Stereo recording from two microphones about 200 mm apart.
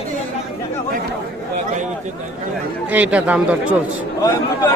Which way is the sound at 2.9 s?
10° right (ahead or behind).